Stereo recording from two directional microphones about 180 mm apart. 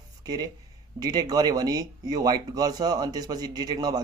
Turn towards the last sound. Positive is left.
turn(degrees=-20)  # may be behind; listen again after turning